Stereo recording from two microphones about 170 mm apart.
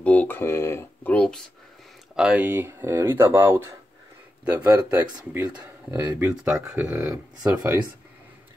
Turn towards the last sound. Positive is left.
turn(degrees=-10)  # may be behind; listen again after turning